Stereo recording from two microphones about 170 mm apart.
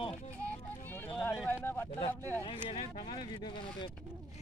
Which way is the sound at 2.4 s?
30° left (ahead or behind).